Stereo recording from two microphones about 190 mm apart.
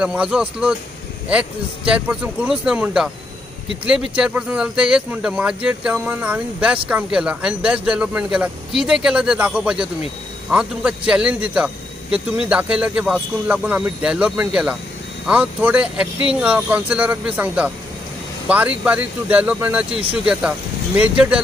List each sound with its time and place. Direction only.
0.0 s speech: 5° right (ahead or behind)
19.9 s speech: 30° right (ahead or behind)
20.2 s speech: 5° right (ahead or behind)